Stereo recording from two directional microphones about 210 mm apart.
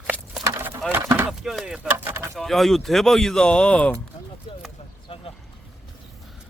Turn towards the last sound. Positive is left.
turn(degrees=25)  # may be behind; listen again after turning